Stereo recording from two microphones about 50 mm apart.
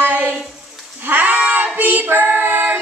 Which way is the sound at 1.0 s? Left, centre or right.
Right.